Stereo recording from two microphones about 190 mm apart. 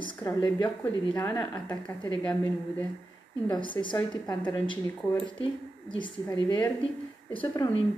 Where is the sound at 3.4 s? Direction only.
25° left (ahead or behind).